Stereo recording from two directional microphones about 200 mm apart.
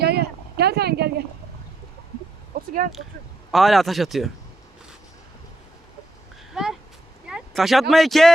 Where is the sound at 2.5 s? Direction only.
50° right (ahead or behind).